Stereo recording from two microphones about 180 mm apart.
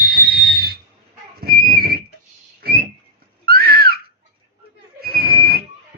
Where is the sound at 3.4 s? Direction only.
55° right (ahead or behind).